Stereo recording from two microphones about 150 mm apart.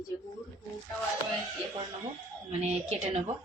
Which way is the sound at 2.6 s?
45° right (ahead or behind).